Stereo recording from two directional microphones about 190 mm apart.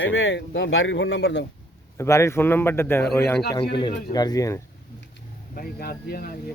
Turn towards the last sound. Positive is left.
turn(degrees=55)  # may be behind; listen again after turning